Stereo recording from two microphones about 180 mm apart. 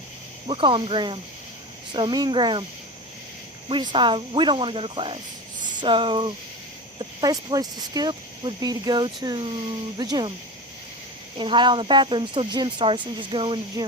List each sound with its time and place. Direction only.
0.4 s speech: 30° right (ahead or behind)
3.7 s speech: 25° right (ahead or behind)
11.3 s speech: 25° right (ahead or behind)